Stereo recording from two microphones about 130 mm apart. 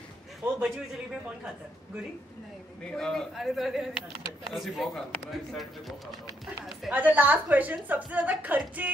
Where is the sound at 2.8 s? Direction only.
5° left (ahead or behind).